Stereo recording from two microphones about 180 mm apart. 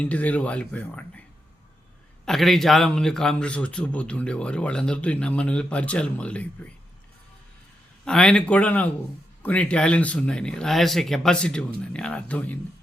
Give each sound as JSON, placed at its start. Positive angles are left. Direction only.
{"t": 0.0, "sound": "speech", "side_deg": 10}
{"t": 2.2, "sound": "a man's voice", "side_deg": 0}
{"t": 8.0, "sound": "a man's voice", "side_deg": 5}